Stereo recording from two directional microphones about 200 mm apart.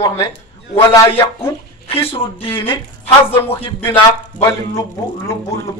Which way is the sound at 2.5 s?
10° left (ahead or behind).